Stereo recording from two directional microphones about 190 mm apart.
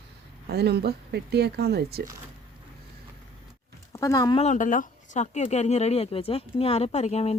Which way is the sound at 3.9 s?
20° left (ahead or behind).